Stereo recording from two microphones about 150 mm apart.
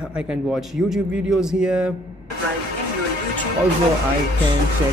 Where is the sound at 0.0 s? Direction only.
5° right (ahead or behind).